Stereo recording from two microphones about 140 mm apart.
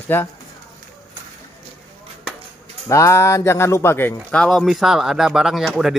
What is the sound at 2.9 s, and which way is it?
Speech, 20° left (ahead or behind).